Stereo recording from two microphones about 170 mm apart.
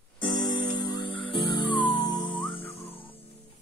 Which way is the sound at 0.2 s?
25° left (ahead or behind).